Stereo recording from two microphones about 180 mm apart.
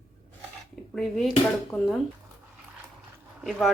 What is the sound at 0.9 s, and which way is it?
Speech, centre (ahead or behind).